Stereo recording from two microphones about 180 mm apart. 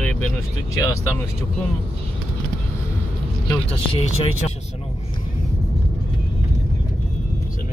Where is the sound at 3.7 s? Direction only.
35° left (ahead or behind).